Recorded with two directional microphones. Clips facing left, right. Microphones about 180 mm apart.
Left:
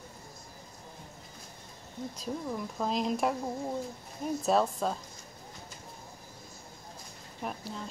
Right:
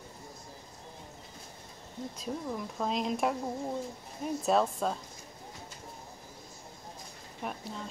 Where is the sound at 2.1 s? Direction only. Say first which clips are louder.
Left 1 dB; centre (ahead or behind).